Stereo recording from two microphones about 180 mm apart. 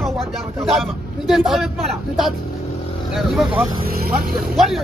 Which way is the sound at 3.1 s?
Centre (ahead or behind).